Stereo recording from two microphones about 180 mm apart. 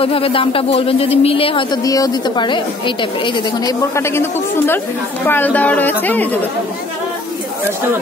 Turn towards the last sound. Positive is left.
turn(degrees=10)  # may be behind; listen again after turning